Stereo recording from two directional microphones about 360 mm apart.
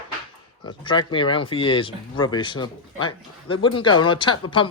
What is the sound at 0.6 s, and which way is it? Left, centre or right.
Speech, centre.